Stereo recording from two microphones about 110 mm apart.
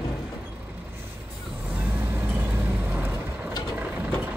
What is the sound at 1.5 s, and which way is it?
Vehicle, 15° right (ahead or behind).